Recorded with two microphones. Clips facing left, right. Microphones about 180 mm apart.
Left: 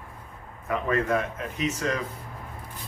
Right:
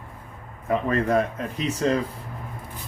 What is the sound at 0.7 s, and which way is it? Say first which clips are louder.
Speech: right 3 dB; 35° right (ahead or behind).